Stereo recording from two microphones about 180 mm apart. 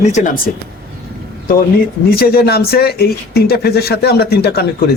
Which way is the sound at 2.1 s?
60° left (ahead or behind).